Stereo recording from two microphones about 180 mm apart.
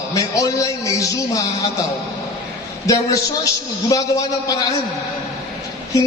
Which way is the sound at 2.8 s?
20° left (ahead or behind).